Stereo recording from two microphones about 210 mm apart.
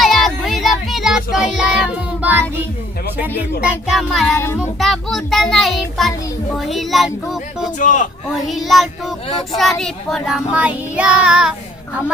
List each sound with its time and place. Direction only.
0.0 s child singing: centre (ahead or behind)
3.6 s child singing: centre (ahead or behind)
4.4 s a child's voice: 10° left (ahead or behind)
4.8 s child singing: centre (ahead or behind)
7.8 s a man's voice: 35° left (ahead or behind)
8.4 s child singing: centre (ahead or behind)